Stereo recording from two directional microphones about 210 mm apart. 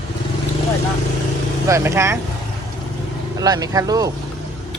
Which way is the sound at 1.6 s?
15° right (ahead or behind).